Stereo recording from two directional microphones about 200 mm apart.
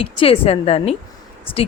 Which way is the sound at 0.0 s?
30° left (ahead or behind).